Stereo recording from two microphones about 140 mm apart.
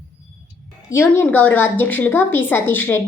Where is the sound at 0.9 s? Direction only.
15° left (ahead or behind).